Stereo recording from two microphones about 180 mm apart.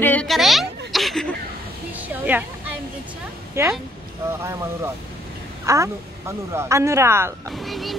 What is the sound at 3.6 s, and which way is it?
Speech, 15° right (ahead or behind).